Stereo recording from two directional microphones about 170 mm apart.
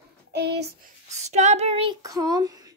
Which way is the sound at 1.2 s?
40° right (ahead or behind).